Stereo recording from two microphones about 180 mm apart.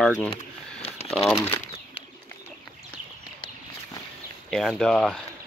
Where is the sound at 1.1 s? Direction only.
Centre (ahead or behind).